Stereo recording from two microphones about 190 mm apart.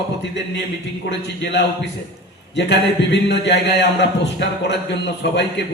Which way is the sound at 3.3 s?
65° left (ahead or behind).